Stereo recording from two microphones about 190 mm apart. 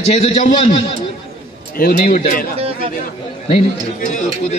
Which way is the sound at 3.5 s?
40° left (ahead or behind).